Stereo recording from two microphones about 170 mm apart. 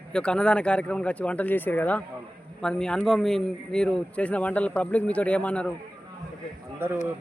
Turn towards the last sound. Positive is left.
turn(degrees=-15)  # may be behind; listen again after turning